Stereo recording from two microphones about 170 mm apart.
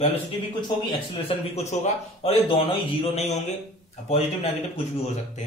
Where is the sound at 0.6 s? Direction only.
30° left (ahead or behind).